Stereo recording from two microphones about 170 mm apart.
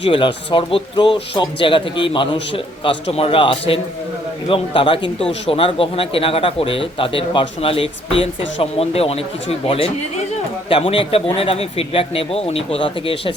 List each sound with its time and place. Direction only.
0.0 s a man's voice: 30° left (ahead or behind)